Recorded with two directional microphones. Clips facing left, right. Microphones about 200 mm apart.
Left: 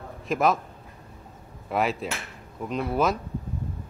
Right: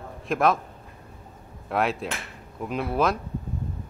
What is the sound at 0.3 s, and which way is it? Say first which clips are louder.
Speech: right 1 dB; centre (ahead or behind).